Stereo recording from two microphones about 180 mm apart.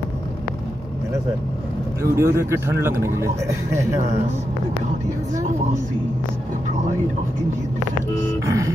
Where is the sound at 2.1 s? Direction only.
15° right (ahead or behind).